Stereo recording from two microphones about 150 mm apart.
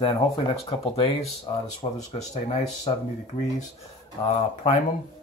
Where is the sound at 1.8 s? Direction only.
40° left (ahead or behind).